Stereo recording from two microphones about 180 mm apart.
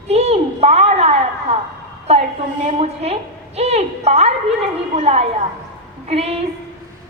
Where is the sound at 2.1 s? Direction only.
35° right (ahead or behind).